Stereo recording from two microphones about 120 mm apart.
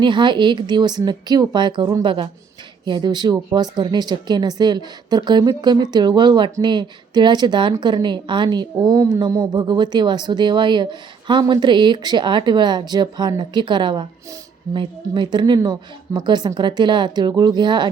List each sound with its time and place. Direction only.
0.0 s speech: 40° right (ahead or behind)